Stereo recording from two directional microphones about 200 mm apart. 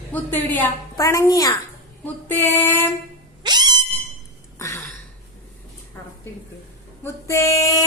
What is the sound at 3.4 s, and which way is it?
Cat, 20° right (ahead or behind).